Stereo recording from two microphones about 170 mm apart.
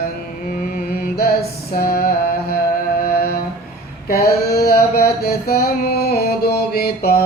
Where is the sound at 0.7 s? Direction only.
60° left (ahead or behind).